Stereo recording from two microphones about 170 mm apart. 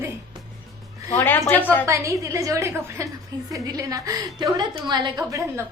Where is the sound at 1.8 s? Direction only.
15° right (ahead or behind).